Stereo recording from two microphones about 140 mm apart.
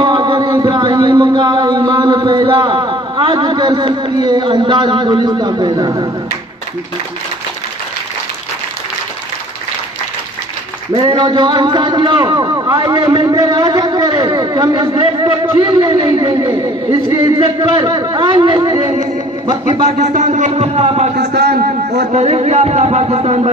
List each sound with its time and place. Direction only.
0.0 s music: 30° right (ahead or behind)
11.0 s music: 35° right (ahead or behind)
12.4 s a man's voice: 25° right (ahead or behind)
13.2 s music: 25° right (ahead or behind)
19.4 s a man's voice: 30° right (ahead or behind)
20.0 s speech: 60° right (ahead or behind)
21.5 s a man's voice: 90° right
22.1 s speech: 50° right (ahead or behind)